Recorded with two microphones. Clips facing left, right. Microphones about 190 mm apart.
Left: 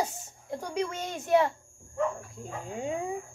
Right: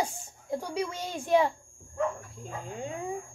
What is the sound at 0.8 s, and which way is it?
Speech, 10° right (ahead or behind).